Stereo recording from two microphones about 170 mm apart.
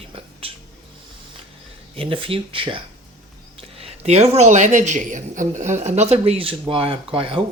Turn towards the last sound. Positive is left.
turn(degrees=-30)  # may be behind; listen again after turning